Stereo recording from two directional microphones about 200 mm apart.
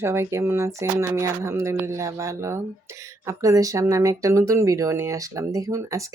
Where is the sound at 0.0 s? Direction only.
15° right (ahead or behind).